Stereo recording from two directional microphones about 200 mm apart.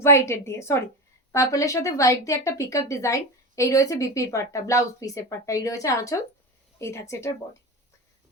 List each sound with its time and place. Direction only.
0.0 s speech: 15° left (ahead or behind)